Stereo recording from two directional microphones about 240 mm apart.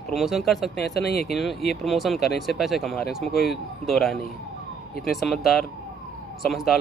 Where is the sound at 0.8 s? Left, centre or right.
Left.